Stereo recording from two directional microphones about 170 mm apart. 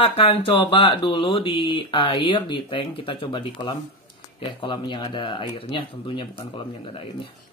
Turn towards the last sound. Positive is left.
turn(degrees=35)  # may be behind; listen again after turning